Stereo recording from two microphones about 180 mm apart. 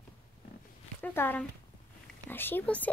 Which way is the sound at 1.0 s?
10° left (ahead or behind).